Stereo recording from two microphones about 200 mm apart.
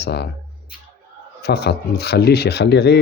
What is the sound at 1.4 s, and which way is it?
Speech, 55° left (ahead or behind).